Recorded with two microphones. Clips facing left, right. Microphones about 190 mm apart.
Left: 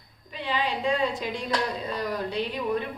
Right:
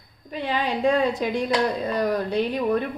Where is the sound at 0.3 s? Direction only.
50° right (ahead or behind).